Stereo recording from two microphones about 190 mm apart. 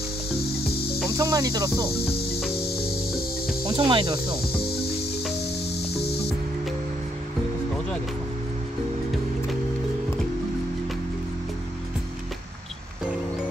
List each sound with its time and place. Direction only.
1.1 s speech: 20° right (ahead or behind)
3.6 s speech: 25° right (ahead or behind)